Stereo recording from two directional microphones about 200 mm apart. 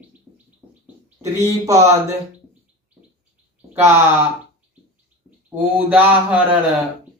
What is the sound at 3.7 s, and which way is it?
Speech, 10° right (ahead or behind).